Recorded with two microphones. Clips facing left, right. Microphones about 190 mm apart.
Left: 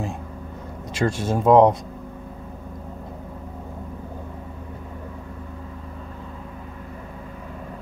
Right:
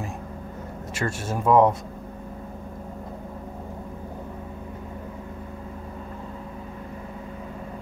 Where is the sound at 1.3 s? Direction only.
20° left (ahead or behind).